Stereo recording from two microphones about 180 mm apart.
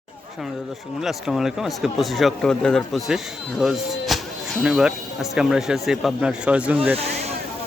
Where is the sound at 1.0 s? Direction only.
Centre (ahead or behind).